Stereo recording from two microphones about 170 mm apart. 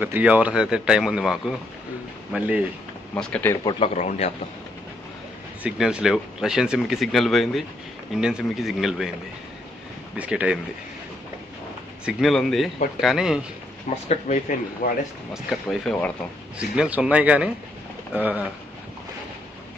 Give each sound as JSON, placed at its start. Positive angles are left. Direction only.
{"t": 0.0, "sound": "speech", "side_deg": -10}
{"t": 3.2, "sound": "speech", "side_deg": 5}
{"t": 3.6, "sound": "a man's voice", "side_deg": 40}
{"t": 5.6, "sound": "speech", "side_deg": -5}
{"t": 10.1, "sound": "speech", "side_deg": -10}
{"t": 12.1, "sound": "speech", "side_deg": 0}
{"t": 13.8, "sound": "speech", "side_deg": 45}
{"t": 14.8, "sound": "speech", "side_deg": 55}
{"t": 15.3, "sound": "speech", "side_deg": 0}
{"t": 16.5, "sound": "speech", "side_deg": -5}